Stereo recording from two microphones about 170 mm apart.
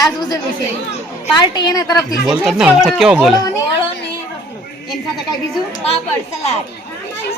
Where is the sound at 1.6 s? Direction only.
25° left (ahead or behind).